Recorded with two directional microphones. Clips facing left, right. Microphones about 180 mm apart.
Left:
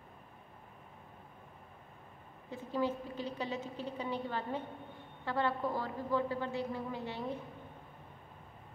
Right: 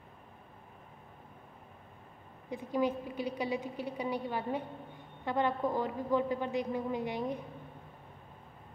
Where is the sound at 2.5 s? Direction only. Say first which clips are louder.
Right 3 dB; 15° right (ahead or behind).